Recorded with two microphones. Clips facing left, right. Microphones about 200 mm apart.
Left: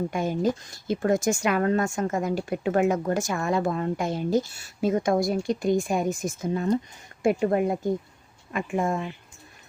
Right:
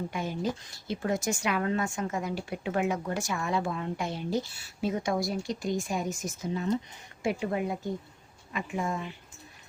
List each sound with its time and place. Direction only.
0.1 s speech: 50° left (ahead or behind)